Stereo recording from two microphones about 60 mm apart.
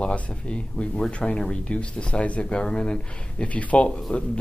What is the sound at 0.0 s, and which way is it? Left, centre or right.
Speech, centre.